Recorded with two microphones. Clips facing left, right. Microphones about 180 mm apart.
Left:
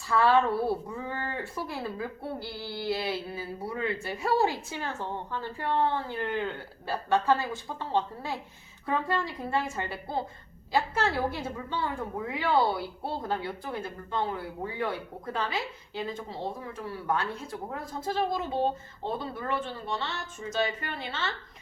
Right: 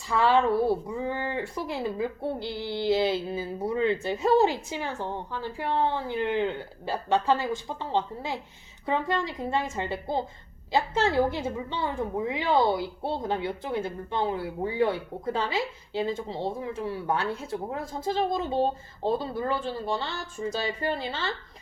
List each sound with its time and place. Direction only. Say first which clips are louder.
0.1 s a woman's voice: right 1 dB; 15° right (ahead or behind); by 21.3 s 35° right (ahead or behind)